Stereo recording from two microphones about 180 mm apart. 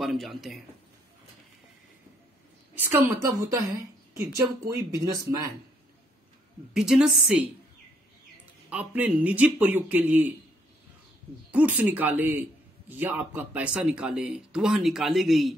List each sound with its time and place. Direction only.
0.0 s a man's voice: centre (ahead or behind)
2.8 s a woman's voice: 10° right (ahead or behind)
6.7 s a man's voice: 5° right (ahead or behind)
8.6 s speech: 10° right (ahead or behind)
11.5 s a man's voice: 10° right (ahead or behind)